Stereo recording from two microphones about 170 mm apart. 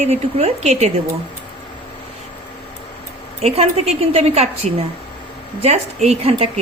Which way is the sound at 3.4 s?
40° right (ahead or behind).